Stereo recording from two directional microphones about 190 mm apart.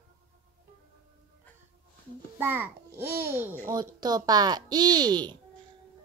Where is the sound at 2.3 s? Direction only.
10° right (ahead or behind).